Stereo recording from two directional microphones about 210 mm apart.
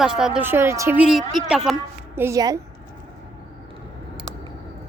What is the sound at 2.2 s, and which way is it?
Speech, 15° right (ahead or behind).